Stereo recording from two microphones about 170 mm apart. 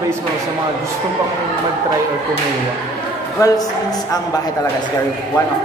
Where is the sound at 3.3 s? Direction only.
20° left (ahead or behind).